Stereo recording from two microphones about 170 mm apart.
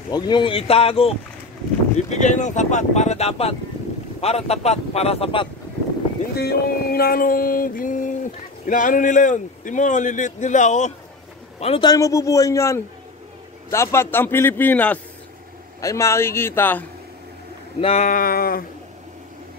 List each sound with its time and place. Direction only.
0.1 s speech: 25° left (ahead or behind)
2.0 s speech: 45° left (ahead or behind)
6.3 s a sound: 65° left (ahead or behind)
8.6 s speech: 50° left (ahead or behind)
11.6 s a man's voice: 30° left (ahead or behind); by 16.8 s 10° left (ahead or behind)
17.7 s speech: 35° left (ahead or behind)
18.0 s a sound: 55° left (ahead or behind)